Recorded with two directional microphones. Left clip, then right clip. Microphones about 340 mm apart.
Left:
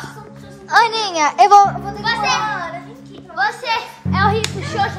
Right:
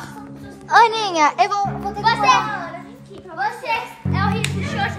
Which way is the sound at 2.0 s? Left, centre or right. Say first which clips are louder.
Right 4 dB; centre.